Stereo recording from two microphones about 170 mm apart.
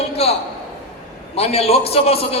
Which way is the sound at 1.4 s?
35° left (ahead or behind).